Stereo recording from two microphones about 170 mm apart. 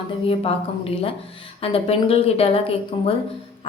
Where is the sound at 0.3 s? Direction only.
35° left (ahead or behind).